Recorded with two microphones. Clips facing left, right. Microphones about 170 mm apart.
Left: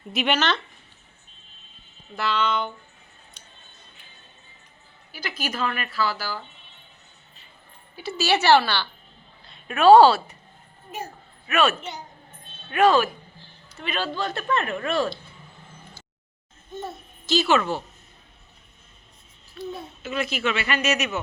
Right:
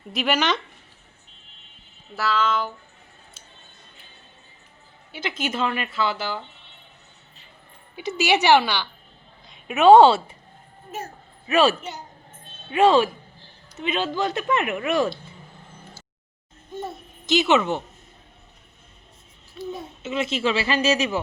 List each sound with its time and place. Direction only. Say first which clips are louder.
0.1 s speech: even; centre (ahead or behind)
0.3 s a woman's voice: right 1 dB; 15° right (ahead or behind)
2.1 s speech: right 1 dB; centre (ahead or behind)
5.1 s a woman's voice: right 4 dB; 25° right (ahead or behind)
7.9 s a woman's voice: right 2 dB; 15° right (ahead or behind)
11.4 s a woman's voice: right 3 dB; 30° right (ahead or behind)
16.7 s a child's voice: right 2 dB; 15° right (ahead or behind)
19.6 s a woman's voice: right 1 dB; 20° right (ahead or behind)